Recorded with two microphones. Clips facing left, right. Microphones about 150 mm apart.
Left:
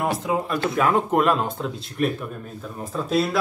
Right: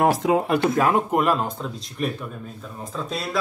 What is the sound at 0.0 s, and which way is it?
Speech, 90° right.